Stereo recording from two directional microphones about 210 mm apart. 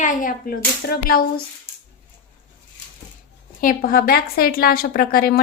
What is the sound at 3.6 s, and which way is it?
A woman's voice, 40° left (ahead or behind).